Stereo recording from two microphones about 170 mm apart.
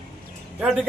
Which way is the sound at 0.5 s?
Centre (ahead or behind).